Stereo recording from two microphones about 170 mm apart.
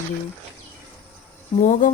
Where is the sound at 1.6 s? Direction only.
45° left (ahead or behind).